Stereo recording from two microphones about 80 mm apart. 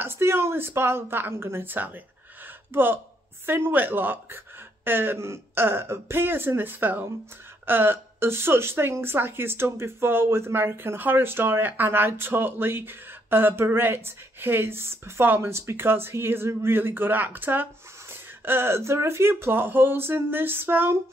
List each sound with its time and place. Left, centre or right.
0.0 s speech: right